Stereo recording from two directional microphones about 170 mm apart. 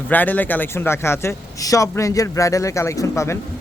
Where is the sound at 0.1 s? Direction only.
10° left (ahead or behind).